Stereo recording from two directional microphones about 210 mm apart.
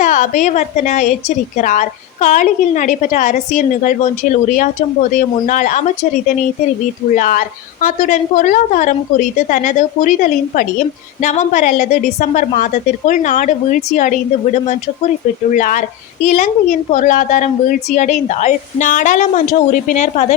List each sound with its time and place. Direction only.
0.0 s a woman's voice: 35° left (ahead or behind)
7.2 s a woman's voice: 40° left (ahead or behind)
15.4 s a woman's voice: 35° left (ahead or behind)